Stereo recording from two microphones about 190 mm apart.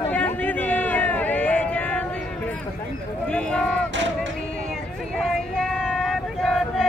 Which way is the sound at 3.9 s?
70° right (ahead or behind).